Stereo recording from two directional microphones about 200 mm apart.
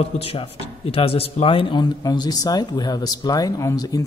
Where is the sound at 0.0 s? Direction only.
30° left (ahead or behind).